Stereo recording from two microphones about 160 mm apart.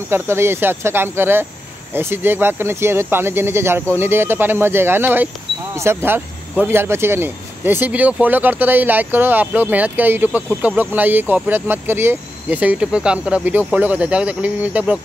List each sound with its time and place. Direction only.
0.1 s speech: 15° right (ahead or behind)